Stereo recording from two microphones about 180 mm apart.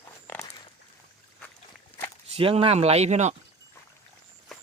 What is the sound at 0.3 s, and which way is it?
Walk, 20° left (ahead or behind).